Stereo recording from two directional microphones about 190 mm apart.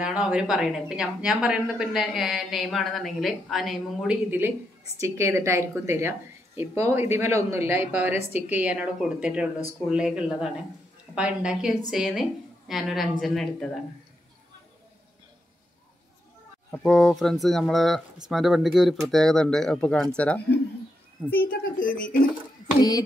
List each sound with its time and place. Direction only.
0.0 s a woman's voice: 5° right (ahead or behind)
16.7 s a woman's voice: 5° left (ahead or behind)
21.3 s a child's voice: 50° left (ahead or behind)
22.8 s a sound: 20° left (ahead or behind)